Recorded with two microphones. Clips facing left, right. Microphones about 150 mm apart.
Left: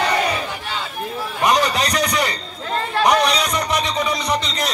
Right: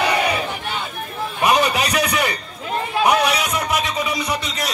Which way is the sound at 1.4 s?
10° right (ahead or behind).